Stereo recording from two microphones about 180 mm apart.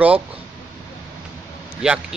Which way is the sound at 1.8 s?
5° right (ahead or behind).